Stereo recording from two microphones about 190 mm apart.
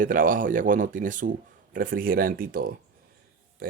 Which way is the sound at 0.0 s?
45° right (ahead or behind).